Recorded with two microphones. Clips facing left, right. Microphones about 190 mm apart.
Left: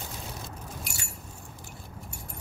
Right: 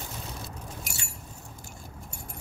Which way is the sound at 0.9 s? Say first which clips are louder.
Even; 45° right (ahead or behind).